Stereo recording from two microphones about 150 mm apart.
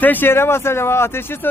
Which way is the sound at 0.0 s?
10° left (ahead or behind).